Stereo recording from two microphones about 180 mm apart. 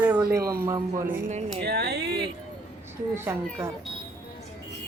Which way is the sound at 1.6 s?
65° right (ahead or behind).